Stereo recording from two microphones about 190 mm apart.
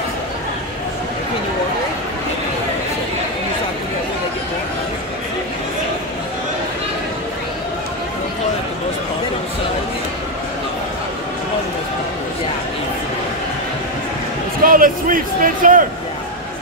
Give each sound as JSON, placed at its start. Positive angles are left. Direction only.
{"t": 14.6, "sound": "speech", "side_deg": -45}